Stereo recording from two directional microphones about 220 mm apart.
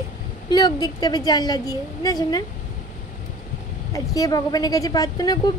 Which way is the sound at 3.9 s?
15° left (ahead or behind).